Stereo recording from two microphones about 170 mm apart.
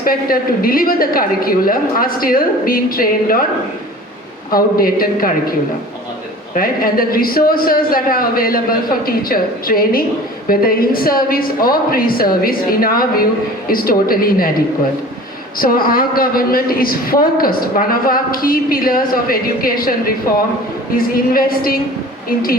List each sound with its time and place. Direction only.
0.0 s a woman's voice: 55° left (ahead or behind)
4.5 s a woman's voice: 60° left (ahead or behind)
15.5 s a woman's voice: 60° left (ahead or behind)